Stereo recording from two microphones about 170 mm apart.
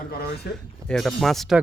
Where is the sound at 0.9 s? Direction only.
Centre (ahead or behind).